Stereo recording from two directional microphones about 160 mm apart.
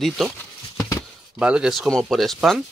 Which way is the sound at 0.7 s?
20° left (ahead or behind).